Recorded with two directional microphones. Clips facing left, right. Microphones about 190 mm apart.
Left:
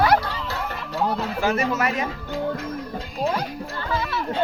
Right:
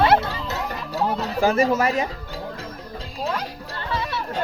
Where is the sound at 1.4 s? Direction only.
35° right (ahead or behind).